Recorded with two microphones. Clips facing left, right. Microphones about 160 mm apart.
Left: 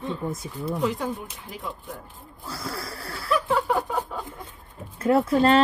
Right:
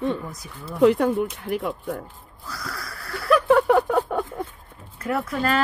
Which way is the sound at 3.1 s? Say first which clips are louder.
Right 7 dB; 60° right (ahead or behind).